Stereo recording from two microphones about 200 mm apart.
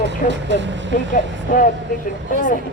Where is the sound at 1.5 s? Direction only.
45° left (ahead or behind).